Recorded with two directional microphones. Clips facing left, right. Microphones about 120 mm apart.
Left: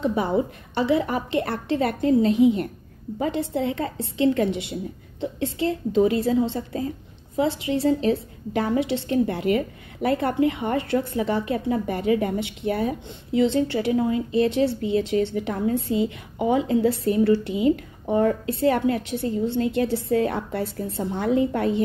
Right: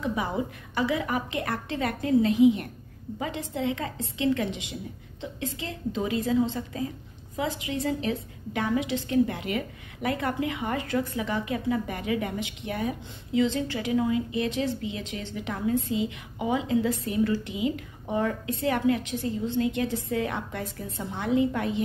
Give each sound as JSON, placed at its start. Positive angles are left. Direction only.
{"t": 0.0, "sound": "a woman's voice", "side_deg": 30}